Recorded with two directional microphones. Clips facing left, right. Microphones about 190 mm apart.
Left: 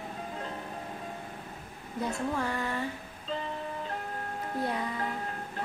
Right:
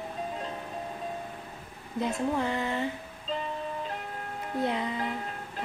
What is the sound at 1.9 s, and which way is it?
Speech, 20° right (ahead or behind).